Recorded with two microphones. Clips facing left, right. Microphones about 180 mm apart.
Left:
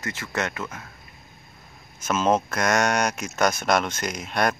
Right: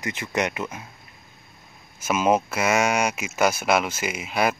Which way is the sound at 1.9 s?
10° right (ahead or behind).